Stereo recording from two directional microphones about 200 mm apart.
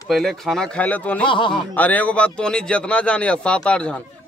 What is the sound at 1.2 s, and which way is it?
Speech, 25° left (ahead or behind).